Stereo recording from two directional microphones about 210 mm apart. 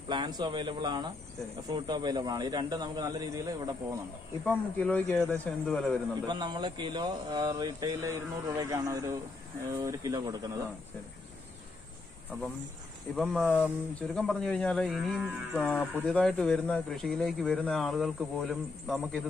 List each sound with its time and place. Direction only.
0.1 s speech: 20° right (ahead or behind)
4.5 s speech: 5° left (ahead or behind)
6.2 s speech: 20° right (ahead or behind)
13.1 s speech: centre (ahead or behind)